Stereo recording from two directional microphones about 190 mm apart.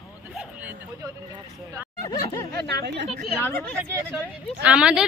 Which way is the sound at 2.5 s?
60° right (ahead or behind).